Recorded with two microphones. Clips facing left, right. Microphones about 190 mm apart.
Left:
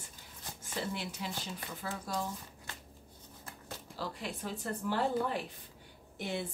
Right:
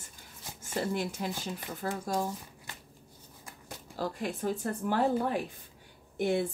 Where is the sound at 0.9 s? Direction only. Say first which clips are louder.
Right 6 dB; 50° right (ahead or behind).